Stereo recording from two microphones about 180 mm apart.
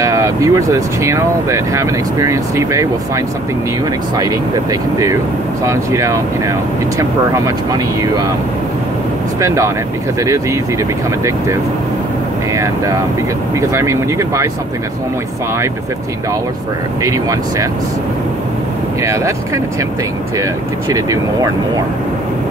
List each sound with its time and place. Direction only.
0.0 s speech: 15° right (ahead or behind)
4.2 s speech: 20° right (ahead or behind)
10.2 s speech: 15° right (ahead or behind)
13.6 s speech: 15° right (ahead or behind)
17.0 s speech: 20° right (ahead or behind)
19.0 s speech: 15° right (ahead or behind)
20.9 s speech: 20° right (ahead or behind)